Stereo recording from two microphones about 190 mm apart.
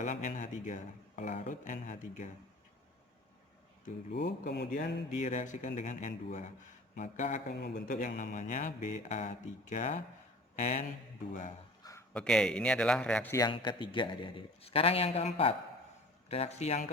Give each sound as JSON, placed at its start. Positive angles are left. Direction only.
{"t": 0.0, "sound": "speech", "side_deg": 40}
{"t": 4.1, "sound": "speech", "side_deg": 60}
{"t": 5.1, "sound": "speech", "side_deg": 40}
{"t": 7.5, "sound": "speech", "side_deg": 60}
{"t": 11.8, "sound": "a sound", "side_deg": 15}
{"t": 12.1, "sound": "speech", "side_deg": 5}
{"t": 13.3, "sound": "a man's voice", "side_deg": 20}